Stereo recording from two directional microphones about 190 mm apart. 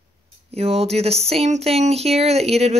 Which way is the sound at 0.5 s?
30° right (ahead or behind).